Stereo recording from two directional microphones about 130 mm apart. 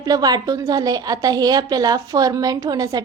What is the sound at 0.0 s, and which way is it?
A woman's voice, 30° right (ahead or behind).